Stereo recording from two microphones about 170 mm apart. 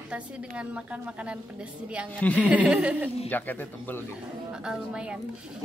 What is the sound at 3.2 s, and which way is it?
Speech, 10° left (ahead or behind).